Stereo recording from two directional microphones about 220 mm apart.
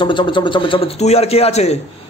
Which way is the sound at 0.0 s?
20° left (ahead or behind).